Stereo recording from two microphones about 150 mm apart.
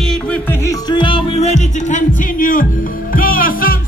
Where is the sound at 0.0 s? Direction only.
5° left (ahead or behind).